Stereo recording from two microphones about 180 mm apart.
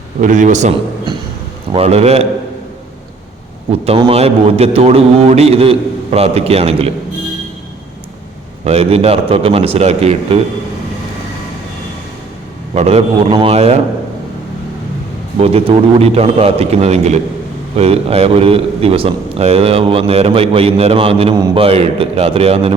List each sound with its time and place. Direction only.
0.2 s a man's voice: 45° right (ahead or behind)
1.7 s a man's voice: 35° right (ahead or behind)
3.7 s a man's voice: 30° right (ahead or behind)
8.6 s a man's voice: 35° right (ahead or behind)
12.7 s a man's voice: 35° right (ahead or behind)
15.4 s a man's voice: 35° right (ahead or behind)
21.3 s a man's voice: 20° right (ahead or behind)
21.6 s a man's voice: 35° right (ahead or behind)